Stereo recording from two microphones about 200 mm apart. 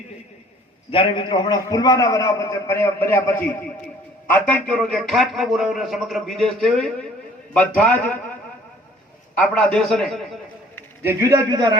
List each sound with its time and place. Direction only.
0.9 s a man's voice: 25° left (ahead or behind); by 8.2 s 5° left (ahead or behind)
9.4 s a man's voice: 5° left (ahead or behind)
11.0 s a man's voice: 15° right (ahead or behind)